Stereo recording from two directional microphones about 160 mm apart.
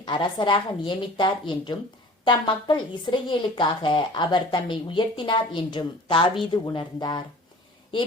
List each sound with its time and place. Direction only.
0.0 s a woman's voice: 30° left (ahead or behind)